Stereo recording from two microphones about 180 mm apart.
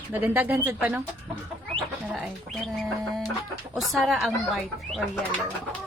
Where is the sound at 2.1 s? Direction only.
Centre (ahead or behind).